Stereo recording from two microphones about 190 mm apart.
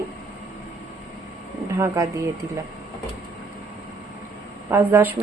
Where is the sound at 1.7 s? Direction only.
15° right (ahead or behind).